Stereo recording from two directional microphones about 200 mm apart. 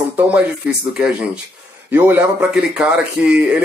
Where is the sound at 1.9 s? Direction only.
10° right (ahead or behind).